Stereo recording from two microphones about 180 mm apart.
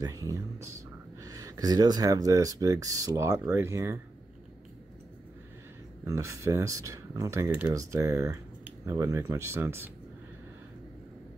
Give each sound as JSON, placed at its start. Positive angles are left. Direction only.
{"t": 0.0, "sound": "speech", "side_deg": -20}
{"t": 6.0, "sound": "speech", "side_deg": -15}